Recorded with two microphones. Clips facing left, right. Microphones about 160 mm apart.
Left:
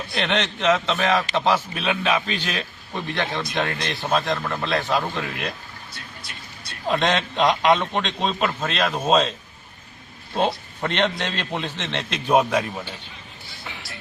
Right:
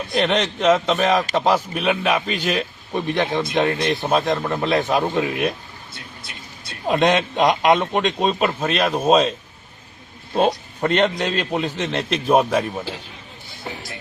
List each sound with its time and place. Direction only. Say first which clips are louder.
0.1 s a man's voice: right 5 dB; 10° right (ahead or behind)
6.8 s a man's voice: right 4 dB; 20° right (ahead or behind)
10.8 s a man's voice: right 5 dB; 10° right (ahead or behind)
13.7 s speech: right 7 dB; 40° right (ahead or behind)